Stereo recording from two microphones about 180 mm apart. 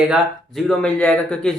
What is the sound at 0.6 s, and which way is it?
Speech, 5° left (ahead or behind).